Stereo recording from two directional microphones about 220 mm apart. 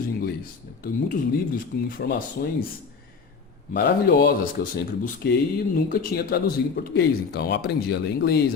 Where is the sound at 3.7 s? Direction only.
45° left (ahead or behind).